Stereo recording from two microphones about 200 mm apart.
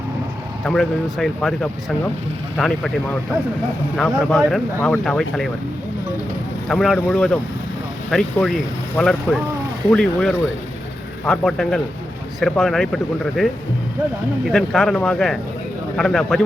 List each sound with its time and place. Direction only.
0.6 s speech: centre (ahead or behind)
6.7 s speech: centre (ahead or behind)